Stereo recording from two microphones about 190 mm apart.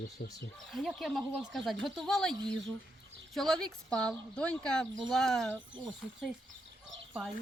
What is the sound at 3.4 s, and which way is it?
Speech, centre (ahead or behind).